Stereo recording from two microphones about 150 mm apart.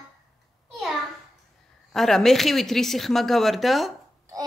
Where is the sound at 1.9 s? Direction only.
Centre (ahead or behind).